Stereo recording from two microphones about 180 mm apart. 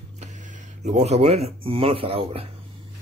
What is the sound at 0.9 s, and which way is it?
Speech, 35° right (ahead or behind).